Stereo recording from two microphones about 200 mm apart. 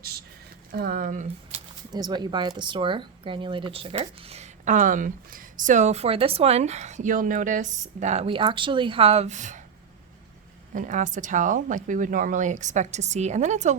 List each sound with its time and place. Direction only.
0.7 s speech: 50° right (ahead or behind)
1.9 s speech: 20° right (ahead or behind); by 9.6 s 35° right (ahead or behind)
10.8 s speech: 40° right (ahead or behind)